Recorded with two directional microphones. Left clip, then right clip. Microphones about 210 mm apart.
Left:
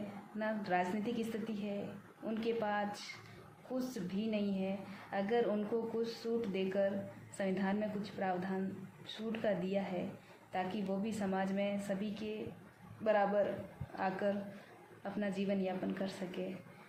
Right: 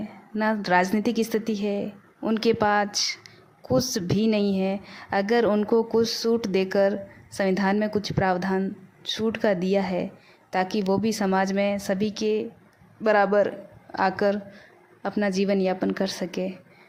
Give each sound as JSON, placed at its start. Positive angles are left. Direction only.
{"t": 0.3, "sound": "a woman's voice", "side_deg": -50}
{"t": 4.1, "sound": "a woman's voice", "side_deg": -50}